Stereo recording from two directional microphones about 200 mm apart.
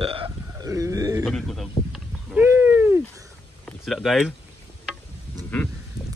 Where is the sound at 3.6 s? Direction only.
Centre (ahead or behind).